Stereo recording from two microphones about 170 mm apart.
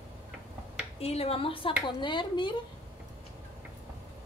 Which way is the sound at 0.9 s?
35° left (ahead or behind).